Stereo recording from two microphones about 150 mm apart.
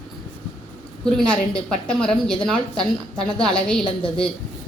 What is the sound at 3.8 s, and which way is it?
Speech, 35° left (ahead or behind).